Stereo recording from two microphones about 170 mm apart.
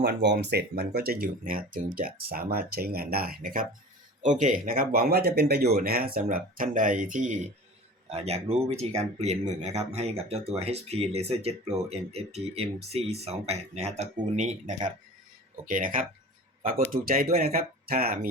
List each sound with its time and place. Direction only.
0.0 s speech: 80° right
0.9 s speech: 65° right (ahead or behind)
4.2 s speech: 45° right (ahead or behind)
15.6 s speech: 55° right (ahead or behind)